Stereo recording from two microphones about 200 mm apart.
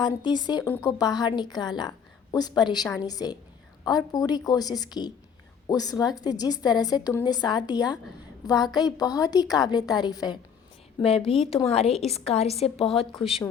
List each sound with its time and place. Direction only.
0.0 s a woman's voice: 20° left (ahead or behind)